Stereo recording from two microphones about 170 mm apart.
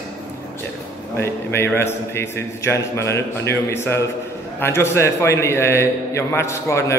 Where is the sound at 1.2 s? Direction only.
15° left (ahead or behind).